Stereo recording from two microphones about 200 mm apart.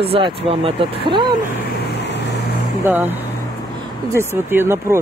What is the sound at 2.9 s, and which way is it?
Speech, 10° right (ahead or behind).